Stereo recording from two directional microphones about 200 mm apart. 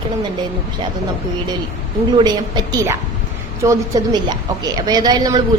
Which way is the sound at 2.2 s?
20° right (ahead or behind).